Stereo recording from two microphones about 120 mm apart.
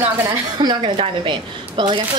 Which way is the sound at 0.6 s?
45° right (ahead or behind).